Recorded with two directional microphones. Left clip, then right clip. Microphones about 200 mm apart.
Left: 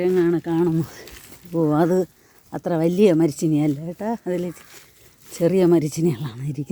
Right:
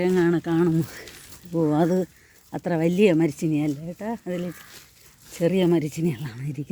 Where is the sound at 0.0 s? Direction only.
Centre (ahead or behind).